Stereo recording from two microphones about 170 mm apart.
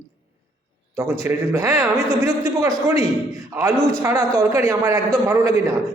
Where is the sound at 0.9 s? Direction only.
15° right (ahead or behind).